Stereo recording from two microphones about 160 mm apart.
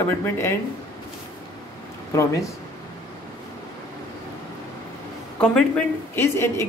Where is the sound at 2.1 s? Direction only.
20° left (ahead or behind).